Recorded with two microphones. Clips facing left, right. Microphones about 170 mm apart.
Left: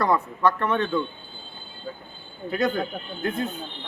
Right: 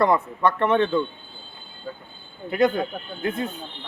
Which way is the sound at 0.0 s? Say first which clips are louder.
Right 2 dB; 20° right (ahead or behind).